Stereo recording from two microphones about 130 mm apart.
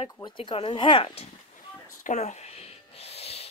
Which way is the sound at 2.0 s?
65° left (ahead or behind).